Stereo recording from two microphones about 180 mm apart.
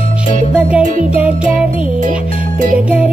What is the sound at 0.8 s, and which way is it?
Music, 45° right (ahead or behind).